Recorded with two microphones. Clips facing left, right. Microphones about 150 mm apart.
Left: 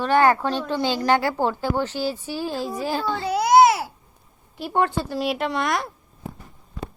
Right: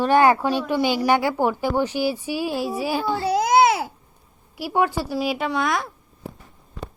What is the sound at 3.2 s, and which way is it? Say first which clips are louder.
Speech: right 3 dB; 35° right (ahead or behind).